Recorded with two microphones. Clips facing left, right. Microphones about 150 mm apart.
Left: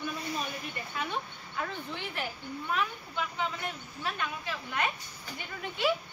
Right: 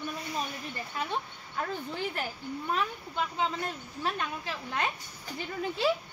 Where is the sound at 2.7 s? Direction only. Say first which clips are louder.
Even; 35° right (ahead or behind).